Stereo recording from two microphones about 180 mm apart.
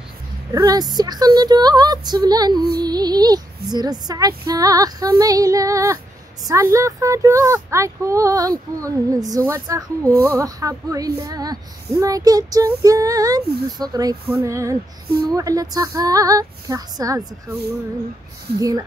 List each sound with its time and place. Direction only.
0.5 s speech: 20° right (ahead or behind)
18.6 s speech: 20° right (ahead or behind)